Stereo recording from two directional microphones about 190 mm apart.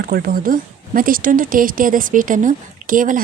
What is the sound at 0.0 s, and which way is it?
A woman's voice, 50° right (ahead or behind).